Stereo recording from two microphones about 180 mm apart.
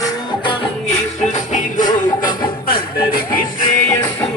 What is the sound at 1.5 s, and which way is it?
Music, 45° left (ahead or behind).